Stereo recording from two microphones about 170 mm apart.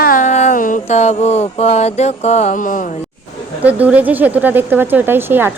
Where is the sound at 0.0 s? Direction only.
50° left (ahead or behind).